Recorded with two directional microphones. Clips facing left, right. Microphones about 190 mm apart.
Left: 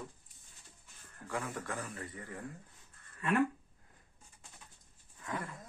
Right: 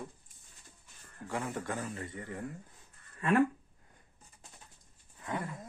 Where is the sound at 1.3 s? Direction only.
25° right (ahead or behind).